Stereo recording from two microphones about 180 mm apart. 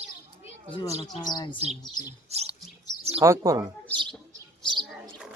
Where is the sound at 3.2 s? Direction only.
20° right (ahead or behind).